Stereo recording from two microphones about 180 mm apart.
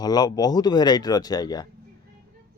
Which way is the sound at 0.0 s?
20° left (ahead or behind).